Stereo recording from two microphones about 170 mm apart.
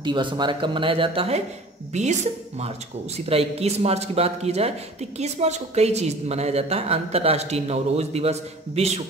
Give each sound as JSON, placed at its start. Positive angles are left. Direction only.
{"t": 0.0, "sound": "speech", "side_deg": -30}
{"t": 3.3, "sound": "speech", "side_deg": -35}